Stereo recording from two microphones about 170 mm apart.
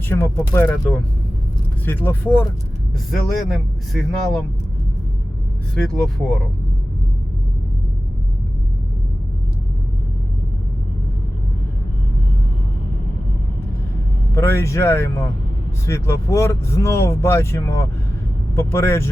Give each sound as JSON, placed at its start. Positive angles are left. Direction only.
{"t": 0.1, "sound": "speech", "side_deg": 15}
{"t": 3.1, "sound": "speech", "side_deg": 0}
{"t": 5.7, "sound": "speech", "side_deg": 5}
{"t": 14.3, "sound": "speech", "side_deg": 15}